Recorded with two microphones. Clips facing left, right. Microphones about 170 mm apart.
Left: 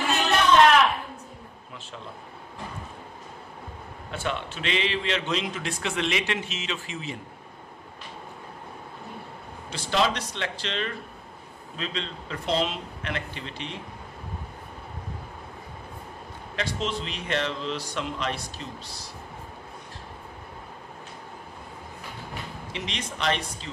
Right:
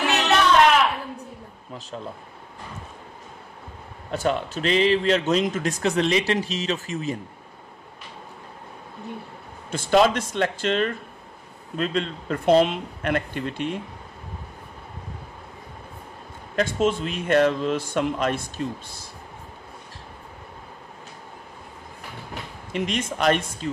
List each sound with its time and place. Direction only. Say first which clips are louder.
0.0 s a sound: right 3 dB; 75° right (ahead or behind)
4.1 s a man's voice: right 7 dB; 40° right (ahead or behind)
9.7 s a man's voice: right 7 dB; 50° right (ahead or behind)
16.5 s a man's voice: right 8 dB; 50° right (ahead or behind)
22.7 s a man's voice: right 10 dB; 50° right (ahead or behind)